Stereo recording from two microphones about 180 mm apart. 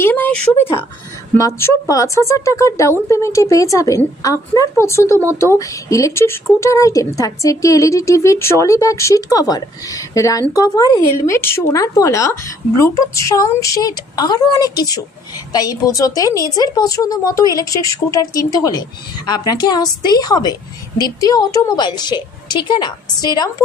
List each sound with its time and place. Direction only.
0.0 s speech: 10° left (ahead or behind)